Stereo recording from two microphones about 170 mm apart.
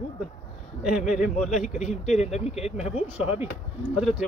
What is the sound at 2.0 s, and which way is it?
Speech, 40° left (ahead or behind).